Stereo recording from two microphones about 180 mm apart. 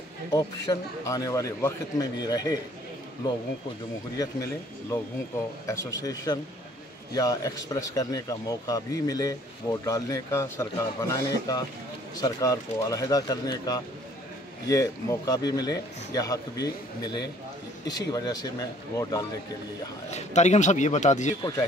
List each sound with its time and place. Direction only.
0.7 s speech: 20° left (ahead or behind)
4.2 s speech: 15° left (ahead or behind)
20.1 s a man's voice: 40° left (ahead or behind)